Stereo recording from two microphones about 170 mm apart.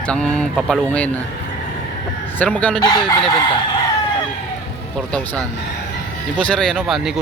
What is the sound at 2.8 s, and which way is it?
Chicken, 25° left (ahead or behind).